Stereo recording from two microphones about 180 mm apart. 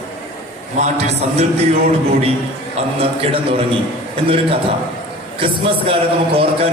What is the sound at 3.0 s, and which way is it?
A man's voice, 30° right (ahead or behind).